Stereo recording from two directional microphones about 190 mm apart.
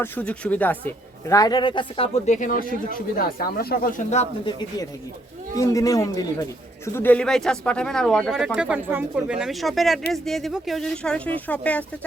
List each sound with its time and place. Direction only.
0.0 s a man's voice: 5° left (ahead or behind); by 2.0 s 25° left (ahead or behind)
2.2 s speech: 40° left (ahead or behind)
5.5 s a man's voice: 15° left (ahead or behind)